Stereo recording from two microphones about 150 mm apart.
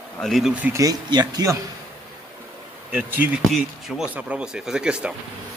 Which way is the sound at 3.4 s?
Centre (ahead or behind).